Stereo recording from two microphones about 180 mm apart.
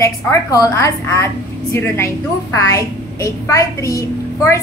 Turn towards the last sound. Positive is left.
turn(degrees=15)  # may be behind; listen again after turning